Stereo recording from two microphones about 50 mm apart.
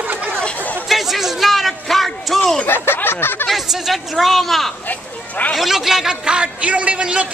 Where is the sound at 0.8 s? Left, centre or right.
Centre.